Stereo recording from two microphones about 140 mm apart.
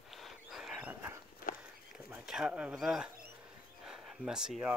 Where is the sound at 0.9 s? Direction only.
20° right (ahead or behind).